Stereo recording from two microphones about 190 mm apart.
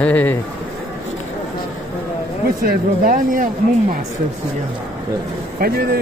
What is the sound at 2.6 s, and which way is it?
Speech, 45° right (ahead or behind).